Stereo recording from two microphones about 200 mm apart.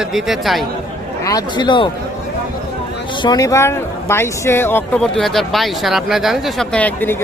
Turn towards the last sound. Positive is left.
turn(degrees=10)  # may be behind; listen again after turning